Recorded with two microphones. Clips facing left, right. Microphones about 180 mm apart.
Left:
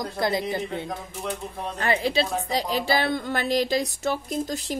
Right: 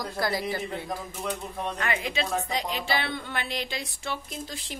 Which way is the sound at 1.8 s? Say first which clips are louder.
Left 8 dB; 35° left (ahead or behind).